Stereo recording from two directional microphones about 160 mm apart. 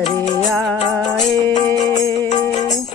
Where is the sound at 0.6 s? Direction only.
Centre (ahead or behind).